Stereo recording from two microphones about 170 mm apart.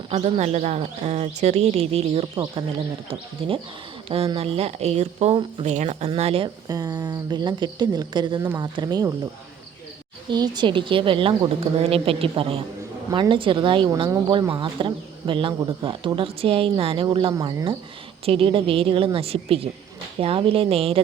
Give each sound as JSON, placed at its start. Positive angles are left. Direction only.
{"t": 0.1, "sound": "speech", "side_deg": -40}
{"t": 6.7, "sound": "speech", "side_deg": -20}
{"t": 10.2, "sound": "speech", "side_deg": -25}
{"t": 17.3, "sound": "speech", "side_deg": -20}
{"t": 18.3, "sound": "speech", "side_deg": -30}